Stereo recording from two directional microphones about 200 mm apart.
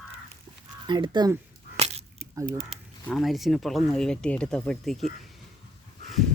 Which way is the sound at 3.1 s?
Centre (ahead or behind).